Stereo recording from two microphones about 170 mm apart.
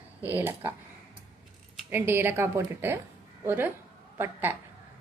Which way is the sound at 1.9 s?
10° right (ahead or behind).